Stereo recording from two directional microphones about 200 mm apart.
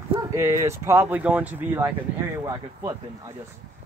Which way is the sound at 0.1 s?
15° right (ahead or behind).